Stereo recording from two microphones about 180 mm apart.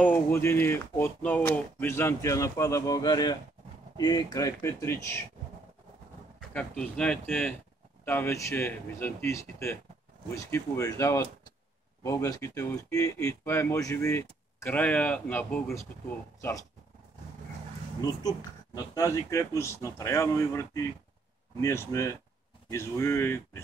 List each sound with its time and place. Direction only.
0.0 s speech: 10° left (ahead or behind)
6.5 s speech: 5° left (ahead or behind)
18.8 s speech: 20° left (ahead or behind)